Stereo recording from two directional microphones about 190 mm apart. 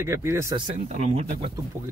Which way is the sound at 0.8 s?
35° right (ahead or behind).